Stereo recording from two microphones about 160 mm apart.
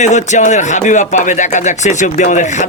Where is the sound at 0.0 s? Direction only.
45° left (ahead or behind).